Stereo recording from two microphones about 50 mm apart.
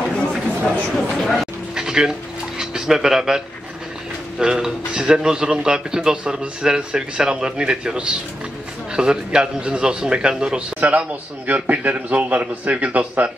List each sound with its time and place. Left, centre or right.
0.9 s a sound: centre
1.8 s dog: centre
2.6 s speech: centre
10.8 s a man's voice: right